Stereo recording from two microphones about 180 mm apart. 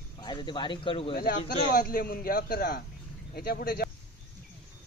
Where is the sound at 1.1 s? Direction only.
55° left (ahead or behind).